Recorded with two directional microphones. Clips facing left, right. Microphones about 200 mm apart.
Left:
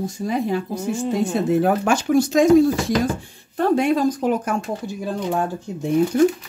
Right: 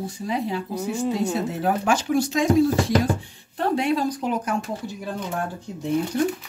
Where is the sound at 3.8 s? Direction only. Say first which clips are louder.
Left 4 dB; 50° left (ahead or behind).